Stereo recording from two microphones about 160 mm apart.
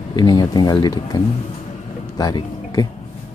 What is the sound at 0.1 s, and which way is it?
Speech, 25° left (ahead or behind).